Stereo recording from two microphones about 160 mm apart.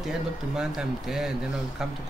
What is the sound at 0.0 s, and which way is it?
Speech, 5° right (ahead or behind).